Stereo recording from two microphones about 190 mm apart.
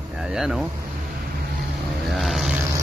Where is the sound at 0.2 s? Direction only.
5° right (ahead or behind).